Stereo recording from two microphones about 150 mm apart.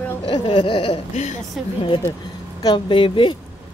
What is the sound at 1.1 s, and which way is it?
Speech, 50° left (ahead or behind).